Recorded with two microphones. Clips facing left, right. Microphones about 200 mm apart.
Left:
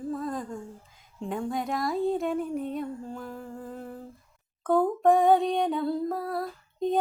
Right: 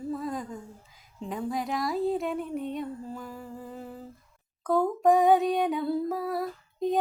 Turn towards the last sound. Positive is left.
turn(degrees=-5)  # may be behind; listen again after turning